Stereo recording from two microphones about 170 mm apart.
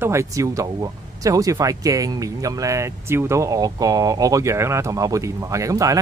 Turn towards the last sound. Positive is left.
turn(degrees=-20)  # may be behind; listen again after turning